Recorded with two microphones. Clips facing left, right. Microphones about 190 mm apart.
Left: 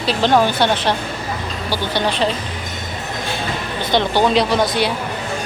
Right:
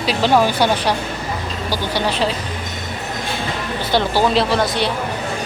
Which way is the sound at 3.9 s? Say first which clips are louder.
Left 1 dB; 5° right (ahead or behind).